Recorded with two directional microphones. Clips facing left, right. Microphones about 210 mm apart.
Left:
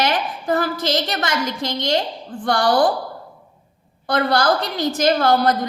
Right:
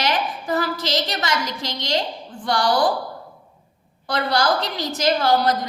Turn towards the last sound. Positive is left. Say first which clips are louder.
# left 2 dB
turn(degrees=55)  # may be behind; listen again after turning